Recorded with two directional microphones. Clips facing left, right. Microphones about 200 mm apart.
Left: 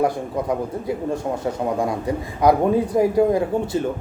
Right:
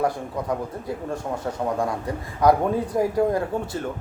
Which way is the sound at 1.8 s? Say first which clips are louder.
Left 4 dB; 15° left (ahead or behind).